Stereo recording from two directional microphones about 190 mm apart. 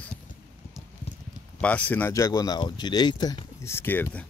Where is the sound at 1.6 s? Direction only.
10° left (ahead or behind).